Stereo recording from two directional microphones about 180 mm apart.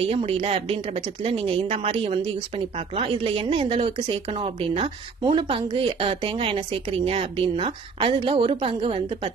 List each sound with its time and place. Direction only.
0.0 s a woman's voice: 35° right (ahead or behind)